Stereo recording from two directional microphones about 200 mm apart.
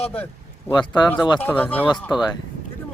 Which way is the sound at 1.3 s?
10° left (ahead or behind).